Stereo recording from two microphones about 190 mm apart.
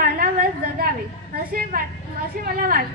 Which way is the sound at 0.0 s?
50° right (ahead or behind).